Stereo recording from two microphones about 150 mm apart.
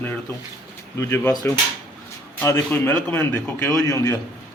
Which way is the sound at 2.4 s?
15° left (ahead or behind).